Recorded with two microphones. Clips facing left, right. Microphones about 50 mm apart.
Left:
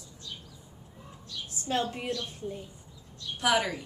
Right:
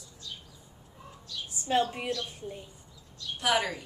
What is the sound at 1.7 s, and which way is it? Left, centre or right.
Speech, centre.